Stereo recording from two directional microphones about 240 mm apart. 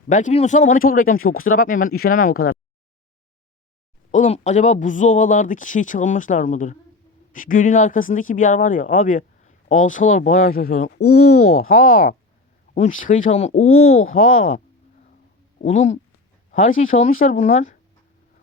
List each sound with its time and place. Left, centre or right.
0.1 s speech: left
4.1 s speech: left
11.3 s speech: left
11.7 s speech: left
13.6 s speech: left
14.3 s speech: left
15.6 s speech: left
17.0 s speech: left